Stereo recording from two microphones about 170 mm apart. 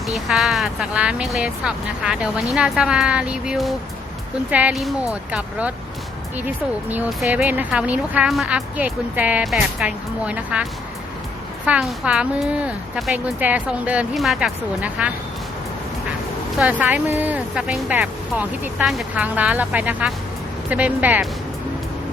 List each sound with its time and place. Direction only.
0.1 s speech: centre (ahead or behind)
6.8 s speech: 10° right (ahead or behind)
16.6 s speech: 10° right (ahead or behind)